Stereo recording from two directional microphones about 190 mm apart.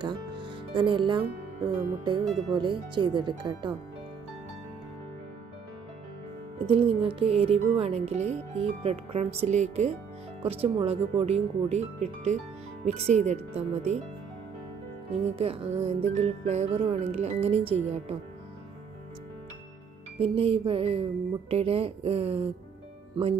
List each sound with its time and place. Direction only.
0.0 s speech: 25° right (ahead or behind)
6.6 s a woman's voice: 25° right (ahead or behind)
15.2 s a woman's voice: 30° right (ahead or behind)
20.2 s a woman's voice: 30° right (ahead or behind)